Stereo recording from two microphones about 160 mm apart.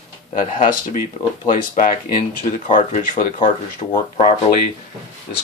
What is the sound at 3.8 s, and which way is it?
Speech, 35° left (ahead or behind).